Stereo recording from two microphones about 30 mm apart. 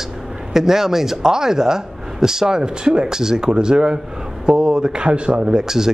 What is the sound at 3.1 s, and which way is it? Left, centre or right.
A man's voice, centre.